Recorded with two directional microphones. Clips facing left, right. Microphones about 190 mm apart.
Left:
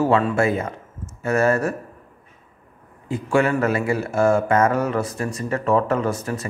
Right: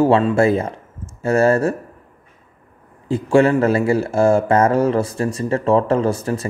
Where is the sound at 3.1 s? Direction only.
30° right (ahead or behind).